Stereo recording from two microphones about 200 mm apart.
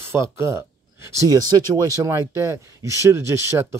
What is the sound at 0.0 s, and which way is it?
Speech, 15° right (ahead or behind).